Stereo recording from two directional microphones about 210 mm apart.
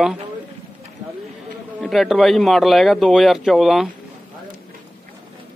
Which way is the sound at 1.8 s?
Centre (ahead or behind).